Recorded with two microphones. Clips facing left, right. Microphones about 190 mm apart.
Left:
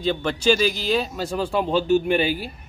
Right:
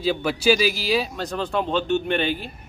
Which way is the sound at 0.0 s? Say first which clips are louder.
Even; 5° right (ahead or behind).